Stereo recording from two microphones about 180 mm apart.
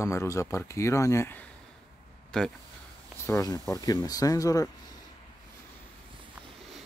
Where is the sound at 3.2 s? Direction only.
15° left (ahead or behind).